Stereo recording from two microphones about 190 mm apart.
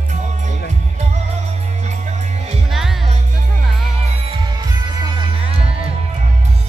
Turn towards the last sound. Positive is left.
turn(degrees=-30)  # may be behind; listen again after turning